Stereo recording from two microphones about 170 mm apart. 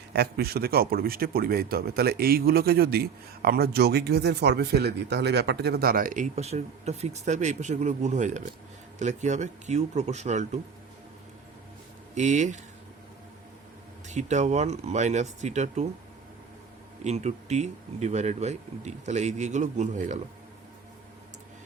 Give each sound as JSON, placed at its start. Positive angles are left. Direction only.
{"t": 0.1, "sound": "a man's voice", "side_deg": -70}
{"t": 12.1, "sound": "speech", "side_deg": -45}
{"t": 14.1, "sound": "speech", "side_deg": -45}
{"t": 17.0, "sound": "speech", "side_deg": -40}